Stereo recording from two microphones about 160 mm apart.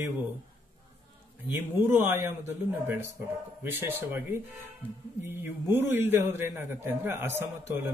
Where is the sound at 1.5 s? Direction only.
15° right (ahead or behind).